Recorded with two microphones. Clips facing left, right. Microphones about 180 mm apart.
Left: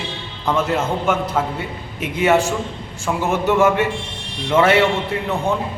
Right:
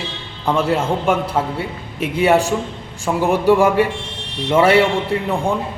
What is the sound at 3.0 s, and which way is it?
Speech, 15° right (ahead or behind).